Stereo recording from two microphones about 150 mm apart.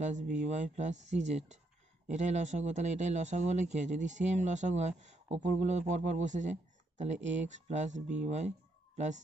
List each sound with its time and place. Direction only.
0.0 s a man's voice: 55° right (ahead or behind)